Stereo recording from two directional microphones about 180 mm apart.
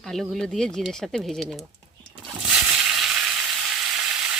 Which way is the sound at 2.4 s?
5° right (ahead or behind).